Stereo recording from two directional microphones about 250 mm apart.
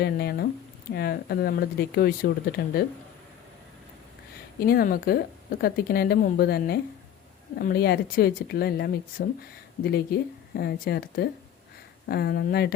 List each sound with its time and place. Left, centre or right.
0.0 s speech: left
4.6 s speech: left